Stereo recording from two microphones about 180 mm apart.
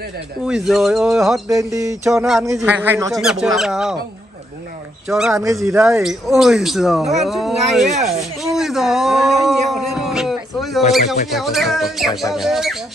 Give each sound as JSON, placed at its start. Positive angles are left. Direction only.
{"t": 0.5, "sound": "speech", "side_deg": -5}
{"t": 1.5, "sound": "a sound", "side_deg": -20}
{"t": 2.0, "sound": "a man's voice", "side_deg": 0}
{"t": 3.2, "sound": "speech", "side_deg": 0}
{"t": 5.0, "sound": "speech", "side_deg": 0}
{"t": 8.5, "sound": "a sound", "side_deg": 0}
{"t": 11.3, "sound": "speech", "side_deg": 0}